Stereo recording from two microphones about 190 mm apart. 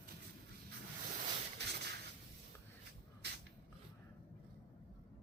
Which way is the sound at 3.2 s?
60° right (ahead or behind).